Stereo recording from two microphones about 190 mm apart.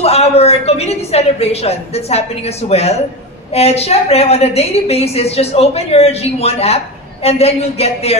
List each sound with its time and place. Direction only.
0.0 s a woman's voice: 35° left (ahead or behind)